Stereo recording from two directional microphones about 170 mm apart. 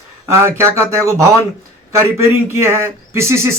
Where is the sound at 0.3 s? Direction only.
15° right (ahead or behind).